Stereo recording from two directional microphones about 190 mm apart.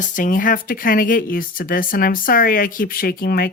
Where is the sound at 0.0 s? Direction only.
45° left (ahead or behind).